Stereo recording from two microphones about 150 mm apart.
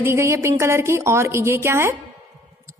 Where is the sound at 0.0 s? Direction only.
15° right (ahead or behind).